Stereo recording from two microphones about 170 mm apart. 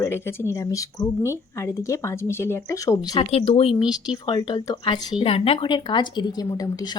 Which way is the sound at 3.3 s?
35° left (ahead or behind).